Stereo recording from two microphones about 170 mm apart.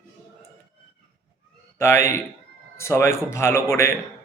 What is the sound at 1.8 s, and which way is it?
Speech, 15° left (ahead or behind).